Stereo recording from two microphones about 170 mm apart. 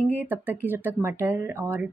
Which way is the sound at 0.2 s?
10° right (ahead or behind).